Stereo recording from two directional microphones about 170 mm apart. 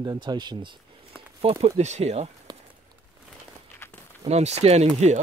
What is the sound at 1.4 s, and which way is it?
Speech, 40° right (ahead or behind).